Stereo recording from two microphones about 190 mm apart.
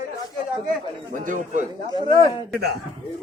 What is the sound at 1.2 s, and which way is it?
Speech, 45° right (ahead or behind).